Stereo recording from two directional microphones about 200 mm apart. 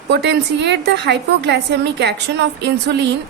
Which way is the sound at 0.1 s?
55° right (ahead or behind).